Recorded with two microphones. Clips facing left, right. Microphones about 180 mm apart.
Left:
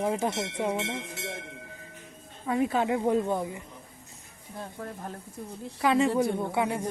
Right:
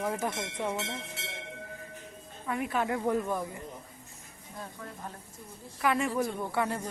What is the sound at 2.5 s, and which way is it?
Speech, 25° left (ahead or behind).